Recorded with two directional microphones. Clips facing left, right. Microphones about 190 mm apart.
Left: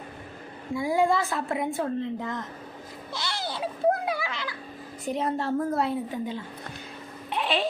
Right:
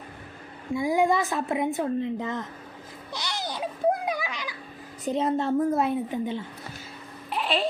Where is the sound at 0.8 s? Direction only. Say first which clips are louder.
Right 1 dB; 20° right (ahead or behind).